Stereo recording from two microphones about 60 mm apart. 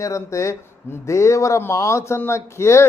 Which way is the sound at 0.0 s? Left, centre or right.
Left.